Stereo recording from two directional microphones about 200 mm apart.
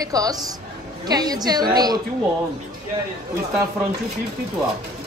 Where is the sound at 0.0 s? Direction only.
20° right (ahead or behind).